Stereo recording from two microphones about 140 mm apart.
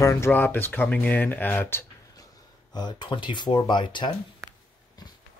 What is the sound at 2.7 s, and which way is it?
Speech, 30° left (ahead or behind).